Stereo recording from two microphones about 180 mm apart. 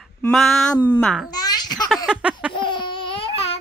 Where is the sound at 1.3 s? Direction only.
20° left (ahead or behind).